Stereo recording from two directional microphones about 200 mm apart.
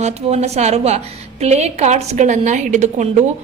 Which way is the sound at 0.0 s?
35° right (ahead or behind).